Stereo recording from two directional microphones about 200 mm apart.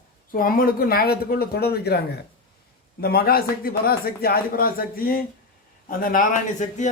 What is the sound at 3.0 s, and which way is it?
A man's voice, 50° left (ahead or behind).